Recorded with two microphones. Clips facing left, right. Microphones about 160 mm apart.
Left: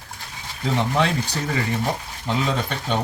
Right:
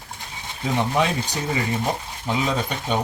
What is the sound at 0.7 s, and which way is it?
Speech, 15° right (ahead or behind).